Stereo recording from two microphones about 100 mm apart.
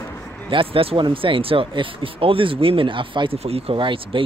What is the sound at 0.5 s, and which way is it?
Speech, 65° right (ahead or behind).